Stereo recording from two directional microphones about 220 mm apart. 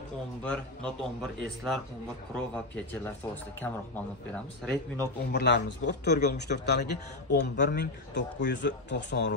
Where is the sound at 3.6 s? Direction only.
5° left (ahead or behind).